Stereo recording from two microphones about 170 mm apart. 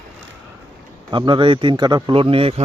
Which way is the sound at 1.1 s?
30° right (ahead or behind).